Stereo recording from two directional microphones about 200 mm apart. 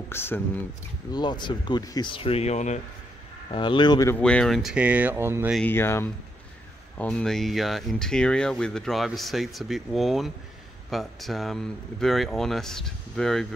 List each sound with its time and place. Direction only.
0.1 s speech: 10° left (ahead or behind)
1.1 s speech: 20° left (ahead or behind)
3.5 s speech: 25° left (ahead or behind)
4.1 s speech: 5° left (ahead or behind); by 5.5 s 10° right (ahead or behind)
5.5 s speech: 10° left (ahead or behind)